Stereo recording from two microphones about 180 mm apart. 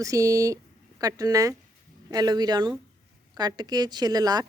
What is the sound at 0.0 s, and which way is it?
A woman's voice, 20° right (ahead or behind).